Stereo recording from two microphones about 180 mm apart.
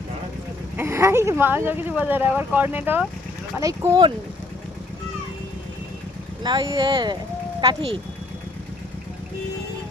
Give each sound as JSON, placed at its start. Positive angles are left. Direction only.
{"t": 0.8, "sound": "speech", "side_deg": -15}
{"t": 6.4, "sound": "speech", "side_deg": -25}